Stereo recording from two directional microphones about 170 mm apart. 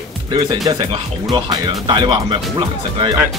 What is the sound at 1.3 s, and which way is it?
Speech, 25° right (ahead or behind).